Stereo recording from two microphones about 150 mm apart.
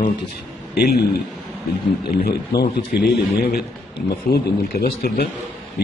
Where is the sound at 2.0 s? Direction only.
90° left.